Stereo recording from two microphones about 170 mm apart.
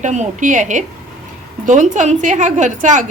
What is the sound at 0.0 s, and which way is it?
A woman's voice, 45° right (ahead or behind).